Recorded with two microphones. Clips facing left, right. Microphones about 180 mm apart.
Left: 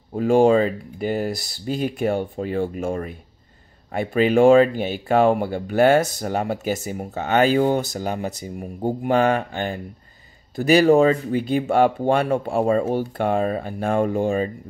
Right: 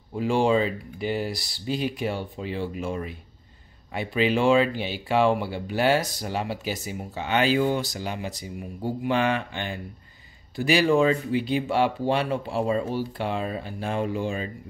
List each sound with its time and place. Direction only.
0.1 s speech: 45° left (ahead or behind)